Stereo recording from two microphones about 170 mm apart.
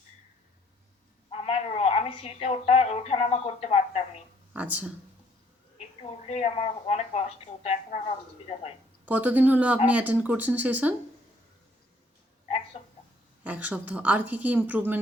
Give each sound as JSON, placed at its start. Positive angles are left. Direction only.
{"t": 1.3, "sound": "a woman's voice", "side_deg": 35}
{"t": 4.5, "sound": "speech", "side_deg": -10}
{"t": 5.7, "sound": "a woman's voice", "side_deg": 40}
{"t": 9.0, "sound": "speech", "side_deg": -10}
{"t": 12.5, "sound": "a sound", "side_deg": 40}
{"t": 13.4, "sound": "speech", "side_deg": -10}